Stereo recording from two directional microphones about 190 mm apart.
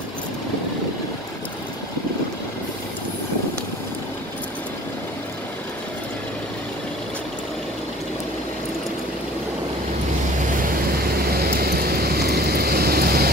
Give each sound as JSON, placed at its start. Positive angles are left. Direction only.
{"t": 10.4, "sound": "vehicle", "side_deg": -45}